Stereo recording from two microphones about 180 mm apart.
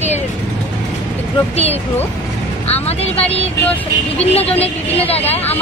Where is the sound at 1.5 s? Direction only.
35° left (ahead or behind).